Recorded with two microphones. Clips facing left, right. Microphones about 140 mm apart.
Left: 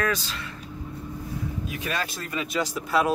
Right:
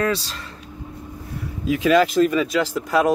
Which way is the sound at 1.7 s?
90° right.